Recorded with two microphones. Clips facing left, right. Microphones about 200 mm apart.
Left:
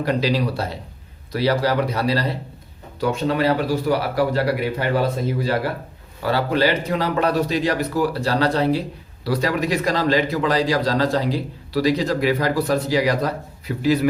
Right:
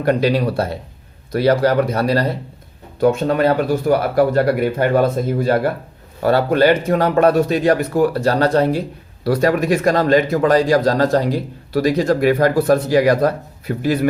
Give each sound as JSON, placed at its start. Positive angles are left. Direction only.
{"t": 0.0, "sound": "a man's voice", "side_deg": -55}